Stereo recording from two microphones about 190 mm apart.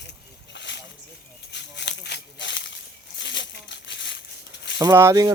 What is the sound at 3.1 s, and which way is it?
Crumpling, 70° left (ahead or behind).